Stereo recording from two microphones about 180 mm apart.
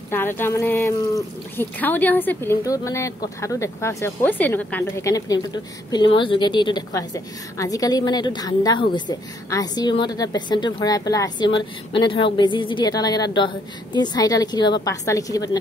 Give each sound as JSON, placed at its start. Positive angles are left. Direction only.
{"t": 0.1, "sound": "speech", "side_deg": 10}